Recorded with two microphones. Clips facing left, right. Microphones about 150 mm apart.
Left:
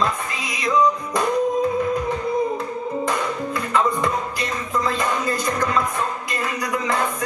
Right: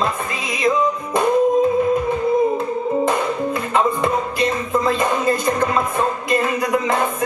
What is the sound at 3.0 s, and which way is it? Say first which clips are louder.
Music: right 4 dB; 25° right (ahead or behind).